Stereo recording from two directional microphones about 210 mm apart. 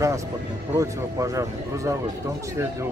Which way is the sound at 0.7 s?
15° right (ahead or behind).